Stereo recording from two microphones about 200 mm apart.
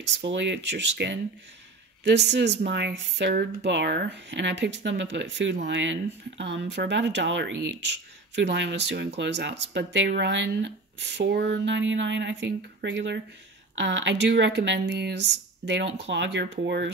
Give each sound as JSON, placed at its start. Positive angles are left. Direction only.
{"t": 0.3, "sound": "speech", "side_deg": -65}